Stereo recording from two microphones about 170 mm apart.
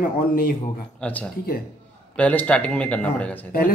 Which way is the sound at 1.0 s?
10° left (ahead or behind).